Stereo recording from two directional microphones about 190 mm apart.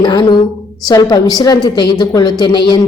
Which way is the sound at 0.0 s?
20° left (ahead or behind).